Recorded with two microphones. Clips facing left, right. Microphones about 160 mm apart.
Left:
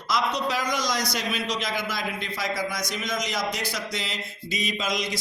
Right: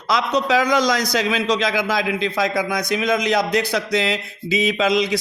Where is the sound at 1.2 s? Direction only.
90° right.